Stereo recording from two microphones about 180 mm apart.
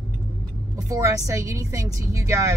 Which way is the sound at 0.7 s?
20° right (ahead or behind).